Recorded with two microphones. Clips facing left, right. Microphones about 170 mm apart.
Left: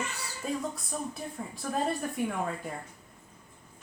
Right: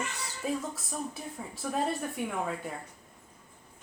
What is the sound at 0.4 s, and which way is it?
Speech, 5° right (ahead or behind).